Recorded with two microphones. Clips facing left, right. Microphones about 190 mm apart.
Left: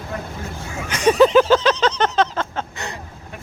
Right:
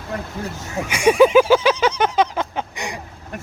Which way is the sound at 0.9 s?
10° right (ahead or behind).